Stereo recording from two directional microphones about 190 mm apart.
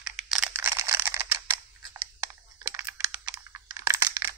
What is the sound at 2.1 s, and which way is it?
Computer keyboard, 15° right (ahead or behind).